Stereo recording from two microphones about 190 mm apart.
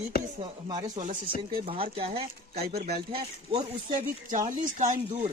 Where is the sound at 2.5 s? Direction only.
55° right (ahead or behind).